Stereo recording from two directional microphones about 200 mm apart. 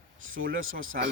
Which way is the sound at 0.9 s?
50° right (ahead or behind).